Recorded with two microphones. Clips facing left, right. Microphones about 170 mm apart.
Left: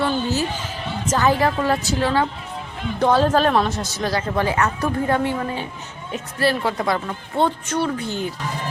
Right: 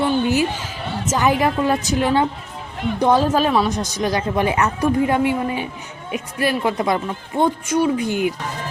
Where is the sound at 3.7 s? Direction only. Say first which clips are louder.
Right 3 dB; 15° right (ahead or behind).